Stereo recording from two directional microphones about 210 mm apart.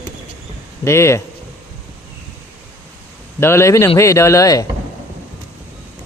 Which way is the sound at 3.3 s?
10° left (ahead or behind).